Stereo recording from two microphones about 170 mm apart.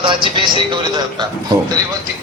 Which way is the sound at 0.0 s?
30° right (ahead or behind).